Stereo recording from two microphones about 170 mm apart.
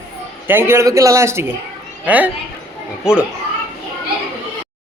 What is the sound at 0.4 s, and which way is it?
A man's voice, 15° right (ahead or behind).